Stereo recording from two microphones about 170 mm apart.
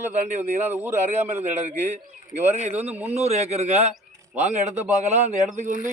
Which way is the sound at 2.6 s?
40° right (ahead or behind).